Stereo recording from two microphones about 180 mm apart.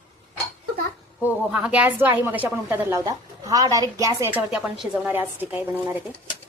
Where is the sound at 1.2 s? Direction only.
10° right (ahead or behind).